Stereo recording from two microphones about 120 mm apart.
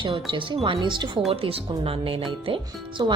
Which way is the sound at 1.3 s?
50° right (ahead or behind).